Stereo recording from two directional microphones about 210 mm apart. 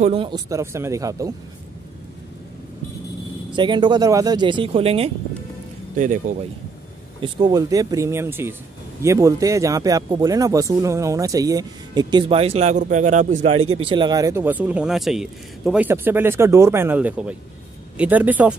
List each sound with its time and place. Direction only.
0.0 s speech: 25° right (ahead or behind)
3.5 s speech: 20° right (ahead or behind)
7.2 s speech: 20° right (ahead or behind)
13.7 s speech: 25° right (ahead or behind); by 18.6 s 5° right (ahead or behind)